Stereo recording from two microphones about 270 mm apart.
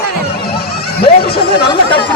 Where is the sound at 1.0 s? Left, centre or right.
Left.